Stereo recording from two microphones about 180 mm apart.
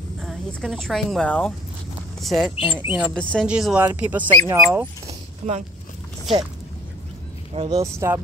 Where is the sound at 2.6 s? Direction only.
30° left (ahead or behind).